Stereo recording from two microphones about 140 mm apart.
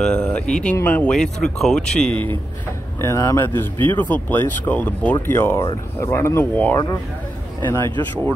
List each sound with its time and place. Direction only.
0.0 s speech: 10° left (ahead or behind)
3.0 s a man's voice: 20° left (ahead or behind)